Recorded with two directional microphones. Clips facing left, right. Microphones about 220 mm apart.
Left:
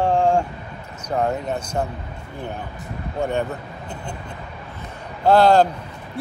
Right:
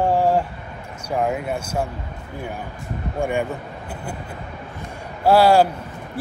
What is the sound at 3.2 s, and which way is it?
Speech, 10° right (ahead or behind).